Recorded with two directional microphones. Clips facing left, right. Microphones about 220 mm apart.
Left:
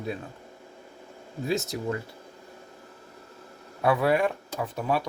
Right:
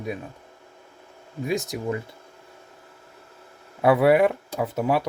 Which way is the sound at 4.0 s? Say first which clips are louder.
Right 7 dB; 20° right (ahead or behind).